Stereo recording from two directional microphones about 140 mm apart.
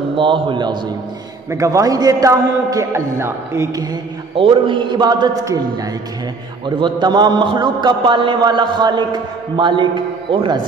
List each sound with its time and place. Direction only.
0.2 s a man's voice: 35° right (ahead or behind)
1.5 s a man's voice: 25° right (ahead or behind)
4.4 s a man's voice: 35° right (ahead or behind)
6.6 s a man's voice: 35° right (ahead or behind)